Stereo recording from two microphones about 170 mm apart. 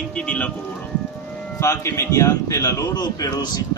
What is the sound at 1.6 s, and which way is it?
A man's voice, 15° left (ahead or behind).